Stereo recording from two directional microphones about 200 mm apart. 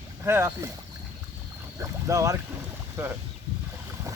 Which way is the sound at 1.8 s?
15° right (ahead or behind).